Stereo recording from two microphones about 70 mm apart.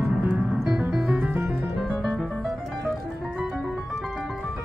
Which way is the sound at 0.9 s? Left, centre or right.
Centre.